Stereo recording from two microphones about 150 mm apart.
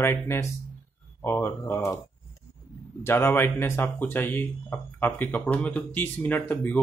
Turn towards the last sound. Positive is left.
turn(degrees=10)  # may be behind; listen again after turning